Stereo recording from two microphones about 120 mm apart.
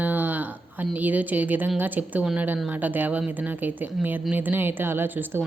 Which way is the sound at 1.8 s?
15° right (ahead or behind).